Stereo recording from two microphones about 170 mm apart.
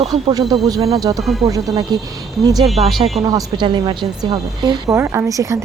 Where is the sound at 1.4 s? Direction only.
25° right (ahead or behind).